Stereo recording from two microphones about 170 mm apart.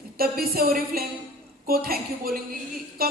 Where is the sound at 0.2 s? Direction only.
60° right (ahead or behind).